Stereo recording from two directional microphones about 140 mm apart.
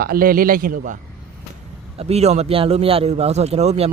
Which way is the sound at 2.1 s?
50° right (ahead or behind).